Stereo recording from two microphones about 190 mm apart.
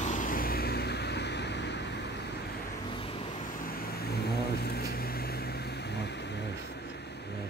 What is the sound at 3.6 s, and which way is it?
Vehicle, 50° left (ahead or behind).